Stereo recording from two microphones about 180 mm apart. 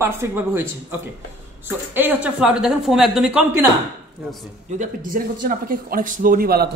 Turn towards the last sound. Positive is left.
turn(degrees=-60)  # may be behind; listen again after turning